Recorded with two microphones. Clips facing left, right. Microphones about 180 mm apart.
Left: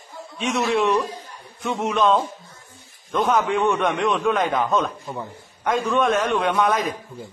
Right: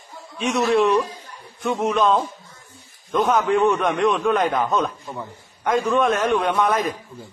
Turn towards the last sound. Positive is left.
turn(degrees=0)  # may be behind; listen again after turning